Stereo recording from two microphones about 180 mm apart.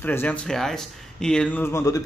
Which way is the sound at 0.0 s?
10° left (ahead or behind).